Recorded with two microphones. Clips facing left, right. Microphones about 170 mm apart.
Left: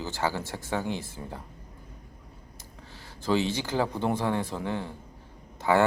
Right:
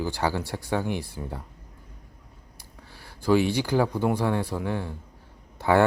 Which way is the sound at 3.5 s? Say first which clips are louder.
Right 4 dB; 15° right (ahead or behind).